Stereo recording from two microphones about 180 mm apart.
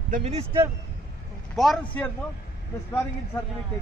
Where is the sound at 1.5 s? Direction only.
Centre (ahead or behind).